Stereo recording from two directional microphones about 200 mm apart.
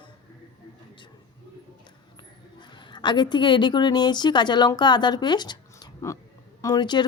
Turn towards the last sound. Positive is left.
turn(degrees=20)  # may be behind; listen again after turning